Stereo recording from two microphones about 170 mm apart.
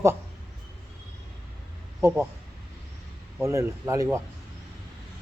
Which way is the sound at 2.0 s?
15° right (ahead or behind).